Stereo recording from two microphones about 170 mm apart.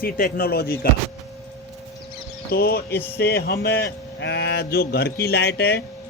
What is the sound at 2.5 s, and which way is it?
A man's voice, 65° left (ahead or behind).